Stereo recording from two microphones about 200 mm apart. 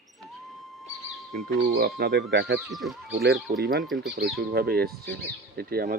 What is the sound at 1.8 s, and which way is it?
Speech, 50° right (ahead or behind).